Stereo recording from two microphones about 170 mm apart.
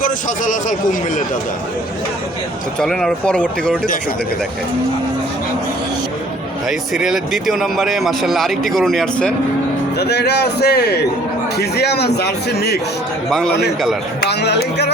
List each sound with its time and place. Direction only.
0.0 s a man's voice: 50° left (ahead or behind)
2.7 s speech: 5° left (ahead or behind)
6.7 s speech: centre (ahead or behind)
10.0 s a man's voice: 75° left (ahead or behind)
14.3 s speech: 80° left